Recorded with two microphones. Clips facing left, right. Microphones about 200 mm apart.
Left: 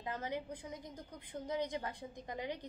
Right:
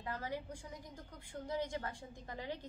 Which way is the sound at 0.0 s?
20° left (ahead or behind).